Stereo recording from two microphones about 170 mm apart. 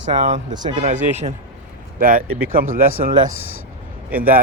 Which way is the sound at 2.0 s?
55° right (ahead or behind).